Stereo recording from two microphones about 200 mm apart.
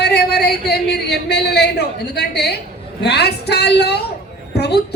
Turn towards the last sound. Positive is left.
turn(degrees=55)  # may be behind; listen again after turning